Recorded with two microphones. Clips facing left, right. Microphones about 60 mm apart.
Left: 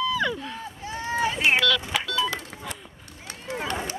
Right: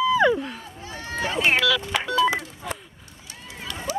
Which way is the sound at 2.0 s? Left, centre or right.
Right.